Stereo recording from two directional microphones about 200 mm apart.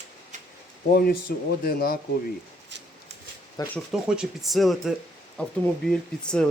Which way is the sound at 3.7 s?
5° right (ahead or behind).